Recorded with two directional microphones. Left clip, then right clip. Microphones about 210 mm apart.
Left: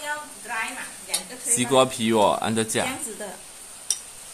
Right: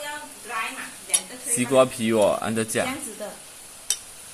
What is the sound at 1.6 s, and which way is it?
Speech, 15° left (ahead or behind).